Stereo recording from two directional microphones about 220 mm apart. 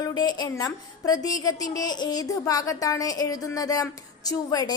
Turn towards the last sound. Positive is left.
turn(degrees=15)  # may be behind; listen again after turning